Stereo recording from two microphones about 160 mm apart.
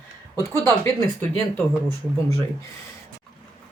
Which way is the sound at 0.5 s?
15° left (ahead or behind).